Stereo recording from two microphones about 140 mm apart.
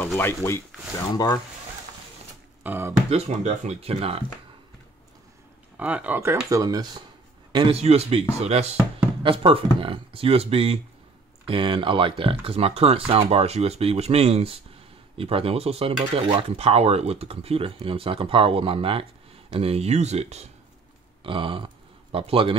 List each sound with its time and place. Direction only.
0.2 s speech: 15° left (ahead or behind)
1.1 s speech: 30° left (ahead or behind)
2.6 s speech: 15° right (ahead or behind)
3.1 s speech: 45° right (ahead or behind)
5.8 s speech: 10° right (ahead or behind)
6.5 s speech: 25° right (ahead or behind)
7.5 s speech: 40° right (ahead or behind)
9.2 s speech: 40° right (ahead or behind)
21.2 s speech: 40° right (ahead or behind)